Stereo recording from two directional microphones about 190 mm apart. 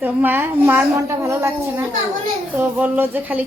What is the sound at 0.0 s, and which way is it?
A woman's voice, 10° right (ahead or behind).